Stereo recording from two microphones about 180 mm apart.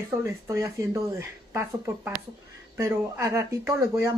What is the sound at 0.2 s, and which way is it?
Speech, 15° right (ahead or behind).